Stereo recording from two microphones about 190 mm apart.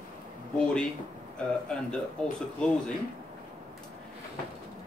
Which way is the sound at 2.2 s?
5° left (ahead or behind).